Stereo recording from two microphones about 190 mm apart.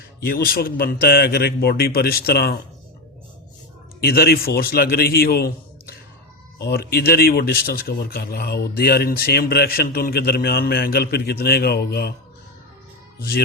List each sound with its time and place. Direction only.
0.2 s speech: 50° left (ahead or behind)
4.0 s speech: 55° left (ahead or behind)
13.1 s speech: 50° left (ahead or behind)